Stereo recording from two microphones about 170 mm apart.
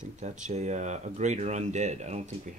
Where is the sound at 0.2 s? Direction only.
45° right (ahead or behind).